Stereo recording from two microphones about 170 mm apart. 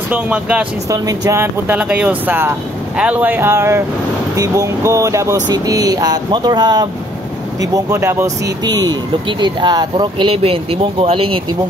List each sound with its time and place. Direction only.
0.1 s speech: 5° right (ahead or behind)
0.8 s speech: 20° right (ahead or behind)